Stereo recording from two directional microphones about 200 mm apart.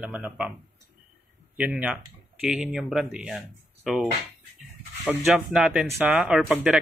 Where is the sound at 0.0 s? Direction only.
5° right (ahead or behind).